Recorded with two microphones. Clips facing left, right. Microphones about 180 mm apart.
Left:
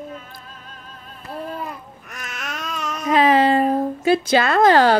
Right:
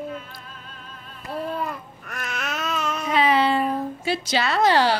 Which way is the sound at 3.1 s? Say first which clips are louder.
Left 5 dB; 45° left (ahead or behind).